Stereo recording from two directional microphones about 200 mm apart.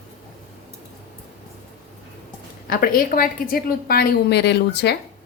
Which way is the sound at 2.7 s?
45° left (ahead or behind).